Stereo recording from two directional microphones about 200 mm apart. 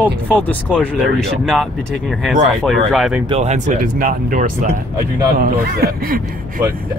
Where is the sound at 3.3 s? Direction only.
35° right (ahead or behind).